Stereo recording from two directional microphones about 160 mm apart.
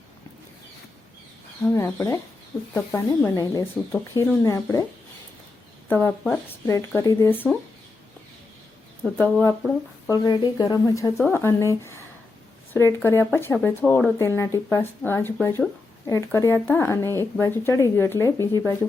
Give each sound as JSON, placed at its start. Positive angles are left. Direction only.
{"t": 1.7, "sound": "speech", "side_deg": 20}
{"t": 5.9, "sound": "speech", "side_deg": 15}
{"t": 9.0, "sound": "speech", "side_deg": 10}
{"t": 10.1, "sound": "speech", "side_deg": 25}